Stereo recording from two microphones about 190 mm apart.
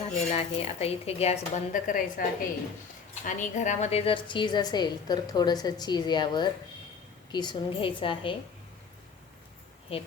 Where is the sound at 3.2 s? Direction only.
40° left (ahead or behind).